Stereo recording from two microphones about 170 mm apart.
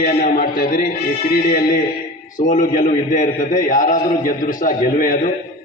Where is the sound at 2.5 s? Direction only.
50° left (ahead or behind).